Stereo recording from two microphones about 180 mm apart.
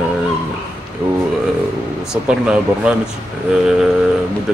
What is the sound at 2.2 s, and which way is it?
Speech, 5° right (ahead or behind).